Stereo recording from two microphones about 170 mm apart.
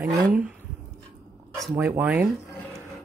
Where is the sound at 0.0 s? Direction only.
5° right (ahead or behind).